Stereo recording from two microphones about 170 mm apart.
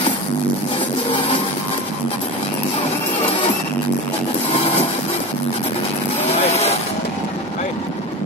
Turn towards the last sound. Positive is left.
turn(degrees=35)  # may be behind; listen again after turning